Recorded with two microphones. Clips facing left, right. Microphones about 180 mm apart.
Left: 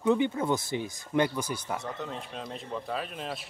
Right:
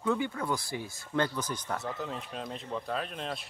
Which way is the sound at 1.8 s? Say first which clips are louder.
Even; centre (ahead or behind).